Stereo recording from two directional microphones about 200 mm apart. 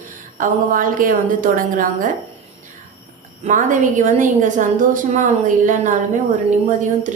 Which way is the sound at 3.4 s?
40° right (ahead or behind).